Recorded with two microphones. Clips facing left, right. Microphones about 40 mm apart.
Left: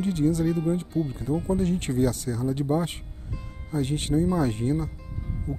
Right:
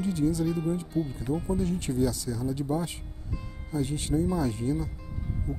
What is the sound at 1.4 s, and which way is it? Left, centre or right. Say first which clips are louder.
Speech: left 3 dB; left.